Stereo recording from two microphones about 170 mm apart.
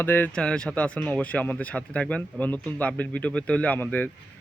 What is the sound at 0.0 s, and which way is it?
Speech, 10° left (ahead or behind).